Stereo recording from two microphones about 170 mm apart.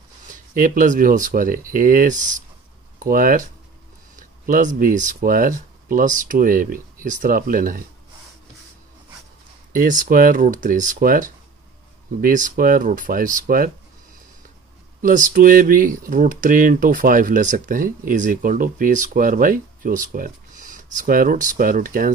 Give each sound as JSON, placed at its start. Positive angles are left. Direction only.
{"t": 0.3, "sound": "speech", "side_deg": -50}
{"t": 9.7, "sound": "speech", "side_deg": -50}
{"t": 15.0, "sound": "speech", "side_deg": -50}